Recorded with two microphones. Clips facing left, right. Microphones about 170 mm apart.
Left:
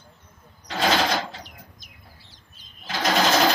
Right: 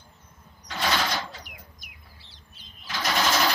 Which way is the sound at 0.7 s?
90° left.